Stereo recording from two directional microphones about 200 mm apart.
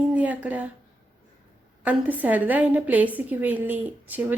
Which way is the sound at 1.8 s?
5° right (ahead or behind).